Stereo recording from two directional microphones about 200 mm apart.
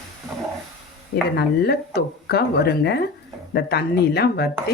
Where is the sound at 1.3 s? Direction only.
55° left (ahead or behind).